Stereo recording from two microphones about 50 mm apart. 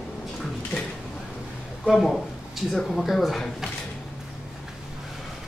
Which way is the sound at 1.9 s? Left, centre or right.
Centre.